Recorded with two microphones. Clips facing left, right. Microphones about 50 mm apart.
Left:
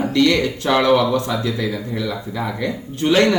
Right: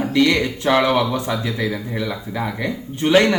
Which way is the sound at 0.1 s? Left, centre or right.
Centre.